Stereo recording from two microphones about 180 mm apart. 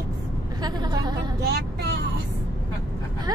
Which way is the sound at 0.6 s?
20° right (ahead or behind).